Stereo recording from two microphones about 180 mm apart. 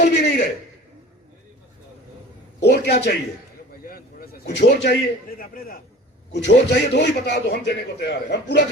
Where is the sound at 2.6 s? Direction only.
65° left (ahead or behind).